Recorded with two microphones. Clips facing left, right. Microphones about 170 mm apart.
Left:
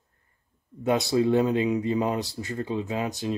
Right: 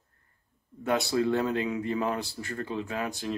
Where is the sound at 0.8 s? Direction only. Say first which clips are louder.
Left 4 dB; 20° left (ahead or behind).